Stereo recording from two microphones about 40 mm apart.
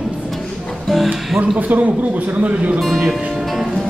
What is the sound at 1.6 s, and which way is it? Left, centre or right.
Speech, right.